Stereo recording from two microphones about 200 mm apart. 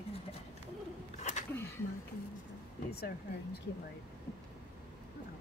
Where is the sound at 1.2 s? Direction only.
35° left (ahead or behind).